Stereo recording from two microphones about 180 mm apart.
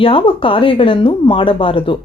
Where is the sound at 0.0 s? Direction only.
30° left (ahead or behind).